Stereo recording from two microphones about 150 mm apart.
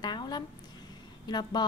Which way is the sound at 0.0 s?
30° left (ahead or behind).